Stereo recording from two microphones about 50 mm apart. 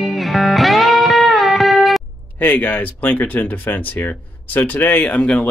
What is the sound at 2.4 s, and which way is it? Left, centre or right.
Speech, left.